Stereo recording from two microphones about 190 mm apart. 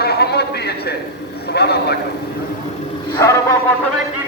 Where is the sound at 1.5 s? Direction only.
60° left (ahead or behind).